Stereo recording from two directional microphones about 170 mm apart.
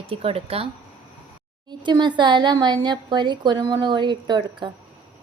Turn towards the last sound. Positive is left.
turn(degrees=-25)  # may be behind; listen again after turning